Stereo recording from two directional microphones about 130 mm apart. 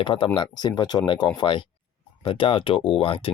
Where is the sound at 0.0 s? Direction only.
40° left (ahead or behind).